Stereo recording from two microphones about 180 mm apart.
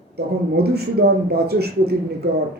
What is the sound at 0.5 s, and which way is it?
Speech, 65° right (ahead or behind).